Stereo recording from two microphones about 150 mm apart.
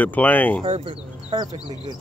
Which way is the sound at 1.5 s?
25° left (ahead or behind).